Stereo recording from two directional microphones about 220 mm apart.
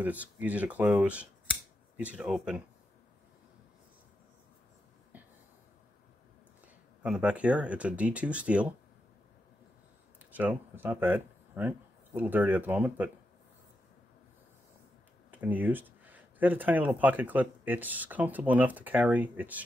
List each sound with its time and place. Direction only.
0.0 s speech: 5° right (ahead or behind)
7.0 s speech: 5° right (ahead or behind)
10.3 s speech: 10° right (ahead or behind)
15.3 s speech: 5° right (ahead or behind)